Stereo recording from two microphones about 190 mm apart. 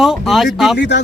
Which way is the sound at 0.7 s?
65° left (ahead or behind).